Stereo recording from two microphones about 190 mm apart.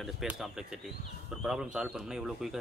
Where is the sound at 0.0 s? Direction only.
Centre (ahead or behind).